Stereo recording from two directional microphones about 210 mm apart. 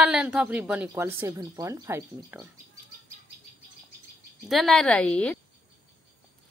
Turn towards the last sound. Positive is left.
turn(degrees=5)  # may be behind; listen again after turning